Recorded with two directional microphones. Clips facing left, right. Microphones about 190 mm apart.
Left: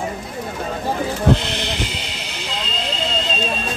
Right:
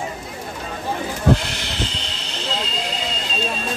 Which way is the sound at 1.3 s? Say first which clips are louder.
Left 1 dB; 20° left (ahead or behind).